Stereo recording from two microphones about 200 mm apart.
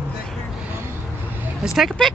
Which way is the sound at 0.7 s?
10° right (ahead or behind).